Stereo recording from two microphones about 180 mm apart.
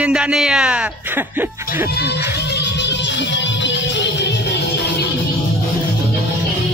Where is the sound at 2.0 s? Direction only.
65° left (ahead or behind).